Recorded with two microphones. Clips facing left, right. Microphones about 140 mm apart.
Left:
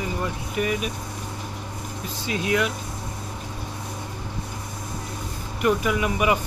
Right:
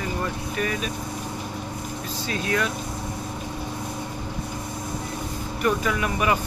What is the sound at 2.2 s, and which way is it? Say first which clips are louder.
Speech: left 2 dB; 15° left (ahead or behind).